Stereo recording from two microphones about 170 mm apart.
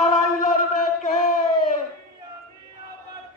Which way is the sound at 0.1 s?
50° left (ahead or behind).